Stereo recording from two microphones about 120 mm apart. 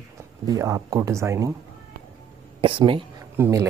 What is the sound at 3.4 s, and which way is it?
Speech, 25° right (ahead or behind).